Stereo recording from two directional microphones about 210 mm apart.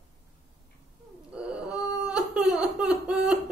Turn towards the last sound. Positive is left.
turn(degrees=-5)  # may be behind; listen again after turning